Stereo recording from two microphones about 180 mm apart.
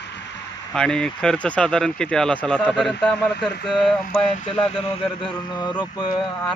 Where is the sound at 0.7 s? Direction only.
5° left (ahead or behind).